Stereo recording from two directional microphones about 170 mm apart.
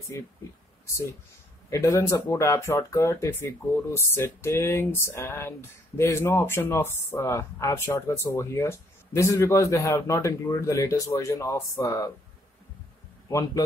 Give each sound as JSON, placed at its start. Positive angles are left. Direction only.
{"t": 1.7, "sound": "speech", "side_deg": 15}
{"t": 13.3, "sound": "speech", "side_deg": 20}